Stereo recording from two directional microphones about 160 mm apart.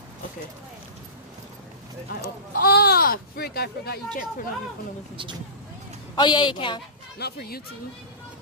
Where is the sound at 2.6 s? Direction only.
80° left.